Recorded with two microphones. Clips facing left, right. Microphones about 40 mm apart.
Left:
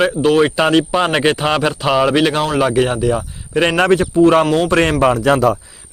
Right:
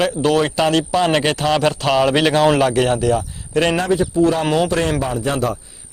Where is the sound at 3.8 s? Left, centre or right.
Left.